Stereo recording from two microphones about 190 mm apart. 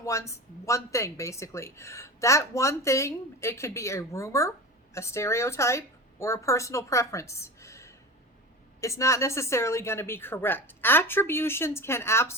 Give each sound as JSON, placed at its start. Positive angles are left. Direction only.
{"t": 0.0, "sound": "a woman's voice", "side_deg": 15}